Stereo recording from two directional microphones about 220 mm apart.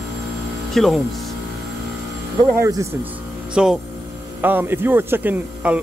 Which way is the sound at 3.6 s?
5° right (ahead or behind).